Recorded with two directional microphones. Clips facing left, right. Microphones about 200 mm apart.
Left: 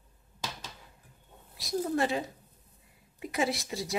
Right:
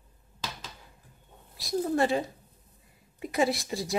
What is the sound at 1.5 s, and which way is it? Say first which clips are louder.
Speech: right 3 dB; 35° right (ahead or behind).